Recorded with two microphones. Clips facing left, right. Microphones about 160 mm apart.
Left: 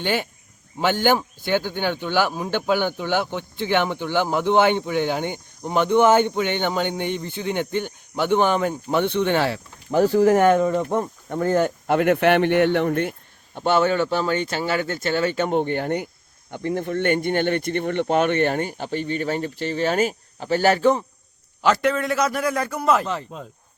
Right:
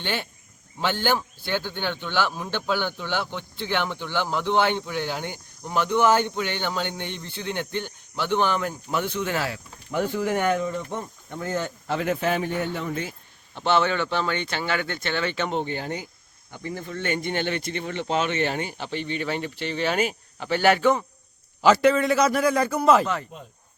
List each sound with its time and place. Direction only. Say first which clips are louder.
0.0 s speech: left 6 dB; 15° left (ahead or behind)
9.0 s speech: left 6 dB; 60° left (ahead or behind)
9.2 s speech: left 7 dB; 30° left (ahead or behind); by 10.6 s 45° left (ahead or behind)
10.6 s speech: left 8 dB; 60° left (ahead or behind)
13.5 s speech: left 3 dB; 45° left (ahead or behind)
21.6 s a man's voice: right 2 dB; centre (ahead or behind)